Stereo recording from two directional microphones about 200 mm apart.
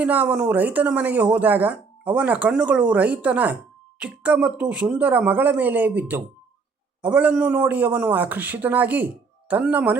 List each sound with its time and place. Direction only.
0.0 s speech: 5° right (ahead or behind)